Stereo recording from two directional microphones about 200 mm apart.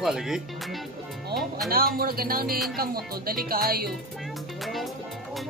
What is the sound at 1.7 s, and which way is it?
Speech, 45° right (ahead or behind).